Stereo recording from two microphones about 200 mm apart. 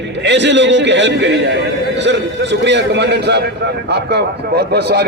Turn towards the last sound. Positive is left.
turn(degrees=-55)  # may be behind; listen again after turning